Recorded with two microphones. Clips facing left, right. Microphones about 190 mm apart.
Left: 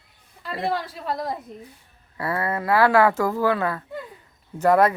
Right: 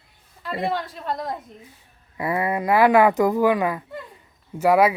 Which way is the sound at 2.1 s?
15° right (ahead or behind).